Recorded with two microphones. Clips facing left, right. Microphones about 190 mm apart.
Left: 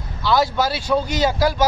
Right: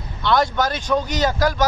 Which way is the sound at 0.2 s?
5° left (ahead or behind).